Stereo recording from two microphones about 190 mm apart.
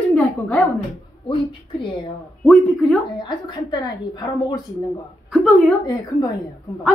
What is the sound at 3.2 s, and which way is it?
A woman's voice, 25° left (ahead or behind).